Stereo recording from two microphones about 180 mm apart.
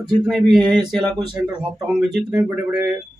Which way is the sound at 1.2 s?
25° right (ahead or behind).